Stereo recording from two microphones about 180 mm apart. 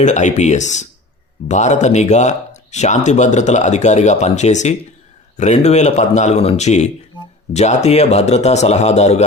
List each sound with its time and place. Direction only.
0.0 s speech: 40° left (ahead or behind)